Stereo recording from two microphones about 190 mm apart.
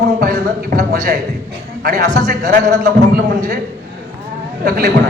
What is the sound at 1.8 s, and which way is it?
A man's voice, 50° right (ahead or behind).